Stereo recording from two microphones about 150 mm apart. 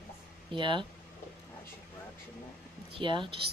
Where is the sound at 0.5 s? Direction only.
35° right (ahead or behind).